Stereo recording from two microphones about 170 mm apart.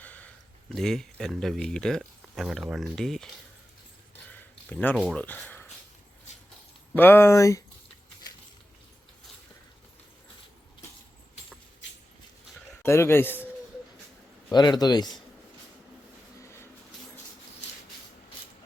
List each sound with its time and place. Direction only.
0.0 s speech: 10° left (ahead or behind)
4.3 s a sound: 10° left (ahead or behind)
6.9 s speech: 10° left (ahead or behind)
12.8 s speech: 15° left (ahead or behind)
14.5 s a man's voice: 25° left (ahead or behind)
16.4 s a sound: 15° left (ahead or behind)